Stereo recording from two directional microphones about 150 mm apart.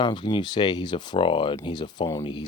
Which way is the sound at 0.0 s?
30° left (ahead or behind).